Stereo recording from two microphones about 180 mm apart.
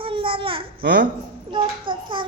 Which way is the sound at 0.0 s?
30° right (ahead or behind).